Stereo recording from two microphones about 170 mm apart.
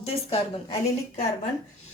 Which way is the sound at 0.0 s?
35° left (ahead or behind).